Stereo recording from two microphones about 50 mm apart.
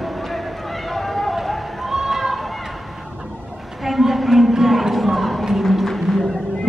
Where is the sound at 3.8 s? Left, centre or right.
Centre.